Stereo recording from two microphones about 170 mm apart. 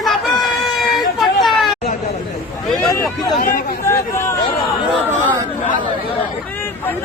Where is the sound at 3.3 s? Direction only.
60° left (ahead or behind).